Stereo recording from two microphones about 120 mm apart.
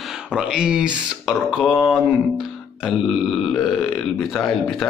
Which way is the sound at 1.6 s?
15° left (ahead or behind).